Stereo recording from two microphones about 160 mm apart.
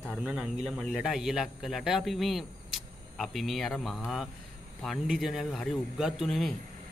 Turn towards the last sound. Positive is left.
turn(degrees=0)  # may be behind; listen again after turning